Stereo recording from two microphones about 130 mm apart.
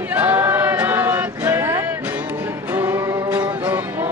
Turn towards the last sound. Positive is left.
turn(degrees=-15)  # may be behind; listen again after turning